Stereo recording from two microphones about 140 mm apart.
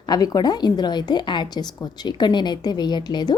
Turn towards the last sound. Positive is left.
turn(degrees=30)  # may be behind; listen again after turning